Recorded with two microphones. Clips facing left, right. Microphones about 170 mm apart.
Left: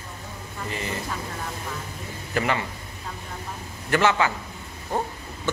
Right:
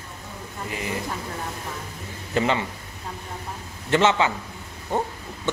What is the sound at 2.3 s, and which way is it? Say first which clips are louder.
Speech: right 2 dB; 20° right (ahead or behind).